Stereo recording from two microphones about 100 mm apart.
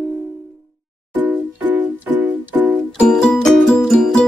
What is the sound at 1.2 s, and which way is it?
Music, 20° right (ahead or behind).